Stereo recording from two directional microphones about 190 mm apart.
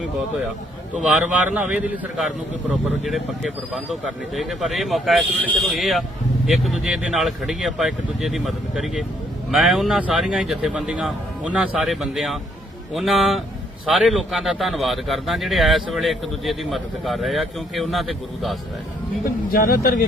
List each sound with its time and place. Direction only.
1.0 s speech: 5° right (ahead or behind)
19.5 s speech: 50° left (ahead or behind)